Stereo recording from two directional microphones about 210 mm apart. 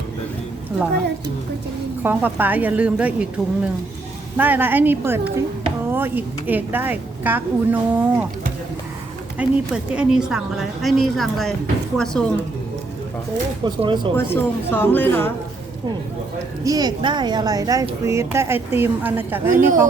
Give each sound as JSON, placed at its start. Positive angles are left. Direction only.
{"t": 2.0, "sound": "speech", "side_deg": -10}
{"t": 9.4, "sound": "a woman's voice", "side_deg": -5}
{"t": 13.7, "sound": "speech", "side_deg": -20}
{"t": 14.3, "sound": "speech", "side_deg": 10}
{"t": 16.6, "sound": "speech", "side_deg": -20}